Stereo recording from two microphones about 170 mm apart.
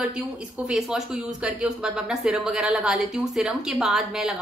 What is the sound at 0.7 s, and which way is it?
Speech, 5° right (ahead or behind).